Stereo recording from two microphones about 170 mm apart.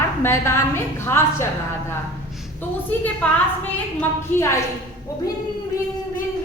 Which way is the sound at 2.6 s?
10° left (ahead or behind).